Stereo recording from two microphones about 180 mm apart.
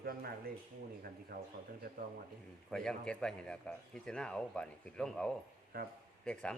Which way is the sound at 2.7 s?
5° left (ahead or behind).